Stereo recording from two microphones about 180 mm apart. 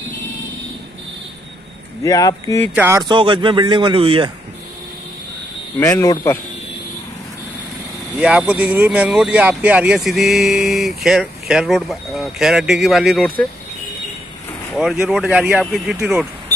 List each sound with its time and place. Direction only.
2.0 s speech: 20° left (ahead or behind)
2.7 s speech: 10° right (ahead or behind)
3.0 s speech: 25° right (ahead or behind)
5.8 s speech: 15° left (ahead or behind)
8.2 s speech: 5° right (ahead or behind)
14.8 s speech: 5° right (ahead or behind)